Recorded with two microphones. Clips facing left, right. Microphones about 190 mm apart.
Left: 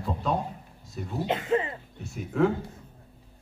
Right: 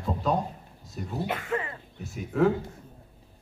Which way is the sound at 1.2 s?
20° left (ahead or behind).